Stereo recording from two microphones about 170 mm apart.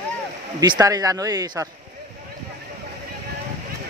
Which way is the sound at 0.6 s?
20° right (ahead or behind).